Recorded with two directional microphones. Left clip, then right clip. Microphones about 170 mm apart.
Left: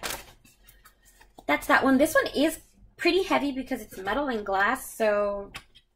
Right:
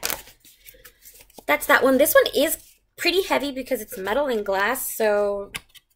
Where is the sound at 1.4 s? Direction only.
20° right (ahead or behind).